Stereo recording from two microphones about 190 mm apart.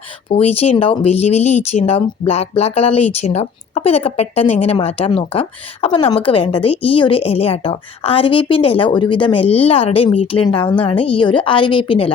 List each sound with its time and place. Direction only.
0.3 s speech: 30° left (ahead or behind)